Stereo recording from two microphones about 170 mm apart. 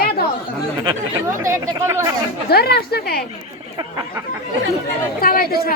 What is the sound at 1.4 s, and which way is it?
Speech, 15° right (ahead or behind).